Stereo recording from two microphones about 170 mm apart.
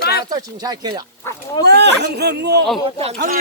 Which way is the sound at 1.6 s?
80° right.